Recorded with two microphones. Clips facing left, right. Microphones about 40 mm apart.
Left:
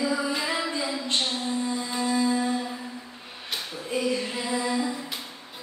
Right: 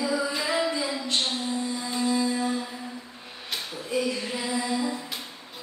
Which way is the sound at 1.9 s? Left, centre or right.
Centre.